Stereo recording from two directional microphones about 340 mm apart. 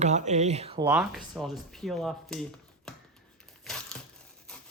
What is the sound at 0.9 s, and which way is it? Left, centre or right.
Speech, centre.